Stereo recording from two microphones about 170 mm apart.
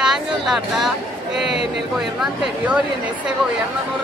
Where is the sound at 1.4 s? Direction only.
35° left (ahead or behind).